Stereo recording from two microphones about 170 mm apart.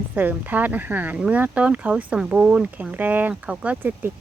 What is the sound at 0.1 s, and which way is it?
Speech, 10° right (ahead or behind).